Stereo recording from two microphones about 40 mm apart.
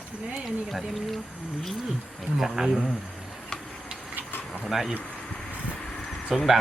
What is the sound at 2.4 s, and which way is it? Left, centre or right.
Speech, centre.